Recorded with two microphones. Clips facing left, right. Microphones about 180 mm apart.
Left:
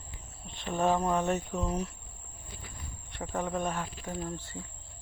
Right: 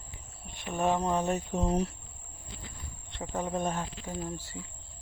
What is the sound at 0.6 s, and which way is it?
Speech, 15° right (ahead or behind).